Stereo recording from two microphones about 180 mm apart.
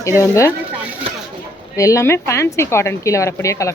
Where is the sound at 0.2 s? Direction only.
15° left (ahead or behind).